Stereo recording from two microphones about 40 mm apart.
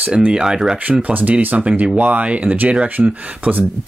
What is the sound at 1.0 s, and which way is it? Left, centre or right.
Speech, right.